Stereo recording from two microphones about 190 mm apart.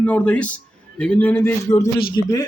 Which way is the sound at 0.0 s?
5° left (ahead or behind).